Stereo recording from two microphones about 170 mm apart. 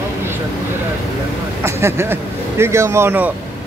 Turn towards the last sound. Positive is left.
turn(degrees=-10)  # may be behind; listen again after turning